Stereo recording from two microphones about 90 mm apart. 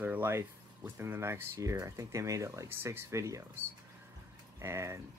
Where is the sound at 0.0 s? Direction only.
25° right (ahead or behind).